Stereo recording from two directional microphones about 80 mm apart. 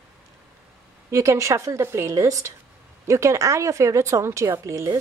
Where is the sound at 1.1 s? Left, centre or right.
Right.